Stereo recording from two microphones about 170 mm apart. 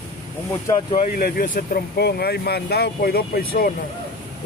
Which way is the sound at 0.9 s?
50° left (ahead or behind).